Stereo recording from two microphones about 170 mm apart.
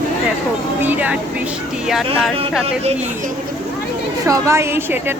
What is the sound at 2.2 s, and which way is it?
Speech, centre (ahead or behind).